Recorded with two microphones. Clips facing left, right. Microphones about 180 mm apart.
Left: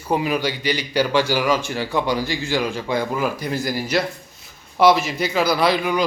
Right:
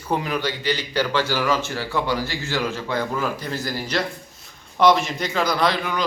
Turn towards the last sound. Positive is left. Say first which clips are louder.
# left 3 dB
turn(degrees=10)  # may be behind; listen again after turning